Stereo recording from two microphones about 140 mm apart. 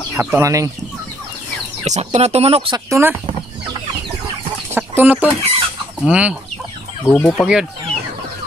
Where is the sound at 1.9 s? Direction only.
50° right (ahead or behind).